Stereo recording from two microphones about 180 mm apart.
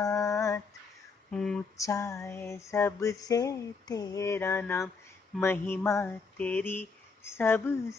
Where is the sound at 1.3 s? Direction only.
5° left (ahead or behind).